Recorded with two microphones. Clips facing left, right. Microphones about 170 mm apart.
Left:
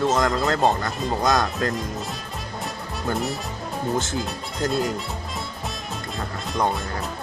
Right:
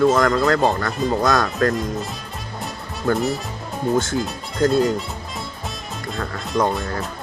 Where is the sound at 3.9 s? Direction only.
Centre (ahead or behind).